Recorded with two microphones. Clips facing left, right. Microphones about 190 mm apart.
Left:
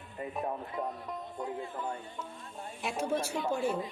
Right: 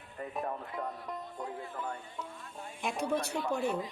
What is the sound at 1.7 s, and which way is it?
Speech, 20° left (ahead or behind).